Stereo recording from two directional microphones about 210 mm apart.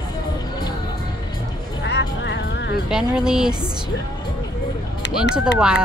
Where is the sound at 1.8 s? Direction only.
55° left (ahead or behind).